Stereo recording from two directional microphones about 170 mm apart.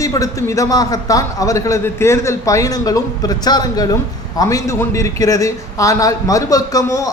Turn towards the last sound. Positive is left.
turn(degrees=20)  # may be behind; listen again after turning